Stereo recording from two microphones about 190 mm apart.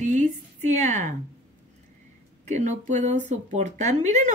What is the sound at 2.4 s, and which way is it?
A woman's voice, 40° right (ahead or behind).